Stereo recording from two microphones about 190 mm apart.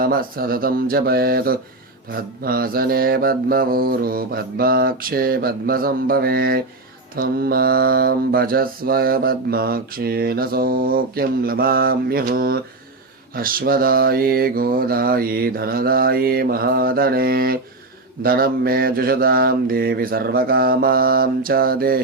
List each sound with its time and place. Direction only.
0.0 s mantra: 50° right (ahead or behind)